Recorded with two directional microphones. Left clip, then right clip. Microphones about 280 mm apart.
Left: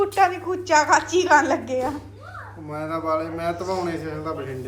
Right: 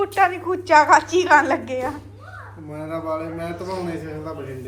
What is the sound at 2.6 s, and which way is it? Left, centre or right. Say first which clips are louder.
A man's voice: left 2 dB; centre.